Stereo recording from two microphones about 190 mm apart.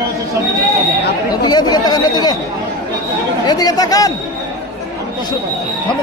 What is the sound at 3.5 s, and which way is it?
Speech, 20° left (ahead or behind).